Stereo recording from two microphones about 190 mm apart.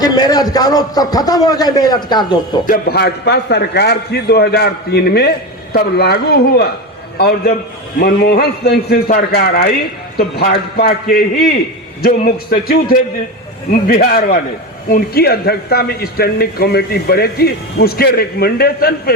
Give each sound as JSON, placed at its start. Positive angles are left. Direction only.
{"t": 0.0, "sound": "a man's voice", "side_deg": 20}
{"t": 2.6, "sound": "a man's voice", "side_deg": 50}